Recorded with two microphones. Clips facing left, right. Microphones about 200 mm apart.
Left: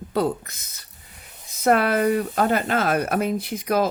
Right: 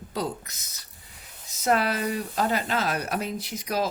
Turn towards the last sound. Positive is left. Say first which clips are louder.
# left 6 dB
turn(degrees=55)  # may be behind; listen again after turning